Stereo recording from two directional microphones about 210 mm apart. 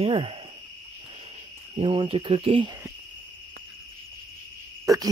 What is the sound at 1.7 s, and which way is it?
Speech, 25° right (ahead or behind).